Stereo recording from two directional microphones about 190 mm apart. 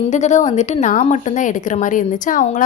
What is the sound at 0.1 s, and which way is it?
A woman's voice, 40° left (ahead or behind).